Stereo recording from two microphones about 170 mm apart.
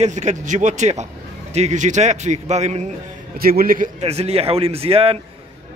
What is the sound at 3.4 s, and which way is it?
Speech, 60° right (ahead or behind).